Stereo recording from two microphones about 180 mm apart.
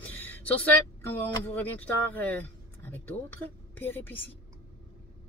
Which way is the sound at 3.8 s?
10° left (ahead or behind).